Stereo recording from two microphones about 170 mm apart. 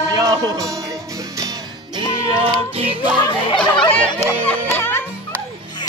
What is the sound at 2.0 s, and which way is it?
Music, 30° right (ahead or behind).